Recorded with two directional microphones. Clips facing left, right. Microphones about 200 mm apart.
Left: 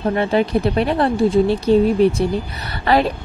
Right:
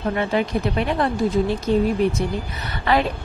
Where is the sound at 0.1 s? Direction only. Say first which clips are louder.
Left 4 dB; 35° left (ahead or behind).